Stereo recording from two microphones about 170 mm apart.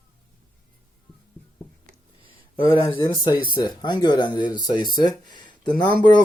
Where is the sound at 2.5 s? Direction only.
30° left (ahead or behind).